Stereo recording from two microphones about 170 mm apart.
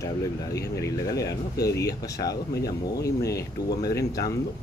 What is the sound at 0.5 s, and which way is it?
Speech, 20° left (ahead or behind).